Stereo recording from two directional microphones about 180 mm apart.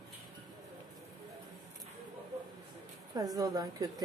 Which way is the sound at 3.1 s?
20° right (ahead or behind).